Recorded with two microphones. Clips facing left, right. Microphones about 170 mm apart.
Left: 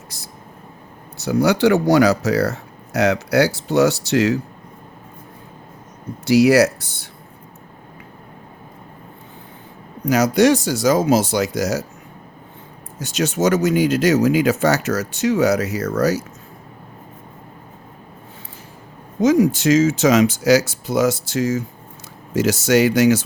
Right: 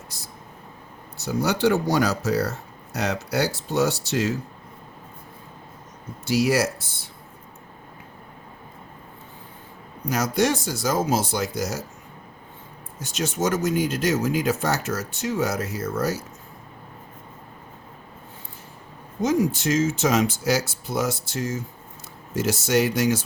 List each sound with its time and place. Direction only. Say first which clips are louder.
1.1 s speech: left 7 dB; 75° left (ahead or behind)
6.2 s speech: left 8 dB; 75° left (ahead or behind)
10.1 s speech: left 8 dB; 80° left
13.0 s speech: left 6 dB; 80° left
19.2 s speech: left 7 dB; 90° left